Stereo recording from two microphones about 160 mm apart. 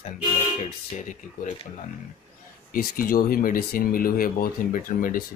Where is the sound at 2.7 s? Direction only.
60° left (ahead or behind).